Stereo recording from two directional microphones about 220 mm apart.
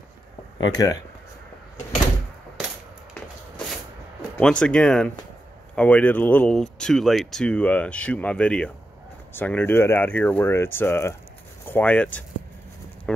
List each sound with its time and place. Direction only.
0.6 s speech: 15° left (ahead or behind)
4.4 s speech: 5° left (ahead or behind)